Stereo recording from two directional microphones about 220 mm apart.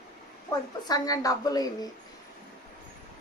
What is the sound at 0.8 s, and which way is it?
A woman's voice, 15° left (ahead or behind).